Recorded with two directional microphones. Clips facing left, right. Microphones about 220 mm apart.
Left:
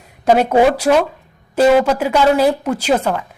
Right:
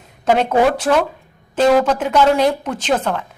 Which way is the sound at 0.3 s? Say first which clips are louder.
Left 2 dB; 10° left (ahead or behind).